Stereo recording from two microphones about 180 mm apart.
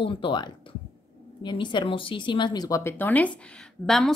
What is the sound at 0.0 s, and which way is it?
A woman's voice, 30° left (ahead or behind).